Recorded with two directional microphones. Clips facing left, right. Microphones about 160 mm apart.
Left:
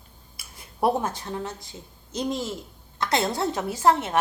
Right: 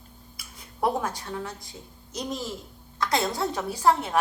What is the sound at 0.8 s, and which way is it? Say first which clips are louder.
A child's voice: left 3 dB; 25° left (ahead or behind).